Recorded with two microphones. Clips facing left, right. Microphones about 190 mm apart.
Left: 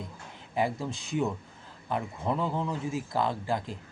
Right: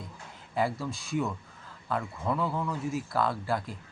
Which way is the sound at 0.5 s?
20° left (ahead or behind).